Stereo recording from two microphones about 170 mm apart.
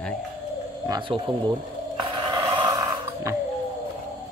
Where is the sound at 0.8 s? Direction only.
20° right (ahead or behind).